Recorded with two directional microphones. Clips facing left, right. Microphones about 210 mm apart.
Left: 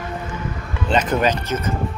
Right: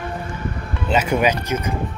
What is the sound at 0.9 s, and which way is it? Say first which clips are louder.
Speech: even; 10° right (ahead or behind).